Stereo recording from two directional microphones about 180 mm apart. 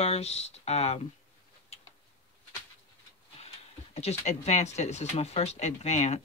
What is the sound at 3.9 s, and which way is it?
Speech, 35° left (ahead or behind).